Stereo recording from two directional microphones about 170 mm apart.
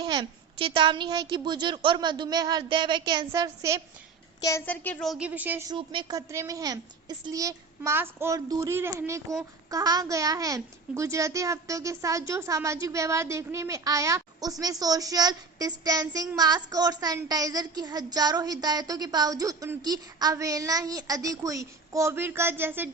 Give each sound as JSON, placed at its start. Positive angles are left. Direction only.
{"t": 0.0, "sound": "a child's voice", "side_deg": -25}
{"t": 4.4, "sound": "a woman's voice", "side_deg": 15}
{"t": 5.6, "sound": "a child's voice", "side_deg": -30}